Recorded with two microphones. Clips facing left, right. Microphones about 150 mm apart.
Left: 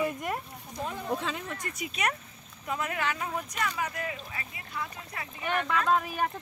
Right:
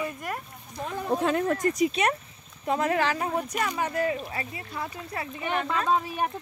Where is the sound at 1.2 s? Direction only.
55° right (ahead or behind); by 5.8 s 25° right (ahead or behind).